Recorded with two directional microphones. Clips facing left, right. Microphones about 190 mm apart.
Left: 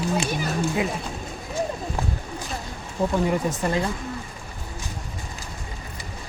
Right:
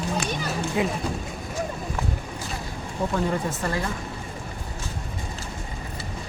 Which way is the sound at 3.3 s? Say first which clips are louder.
Left 3 dB; 15° left (ahead or behind).